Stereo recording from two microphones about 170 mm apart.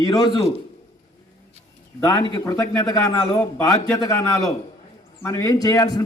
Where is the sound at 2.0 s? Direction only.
25° left (ahead or behind).